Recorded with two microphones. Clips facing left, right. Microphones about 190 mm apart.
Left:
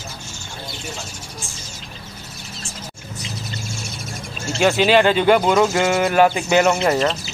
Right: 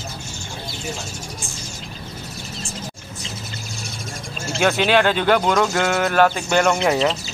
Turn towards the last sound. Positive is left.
turn(degrees=0)  # may be behind; listen again after turning